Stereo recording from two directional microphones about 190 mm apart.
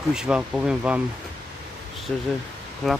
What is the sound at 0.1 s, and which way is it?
Speech, 5° right (ahead or behind).